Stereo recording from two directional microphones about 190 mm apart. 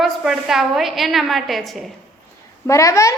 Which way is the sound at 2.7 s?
15° left (ahead or behind).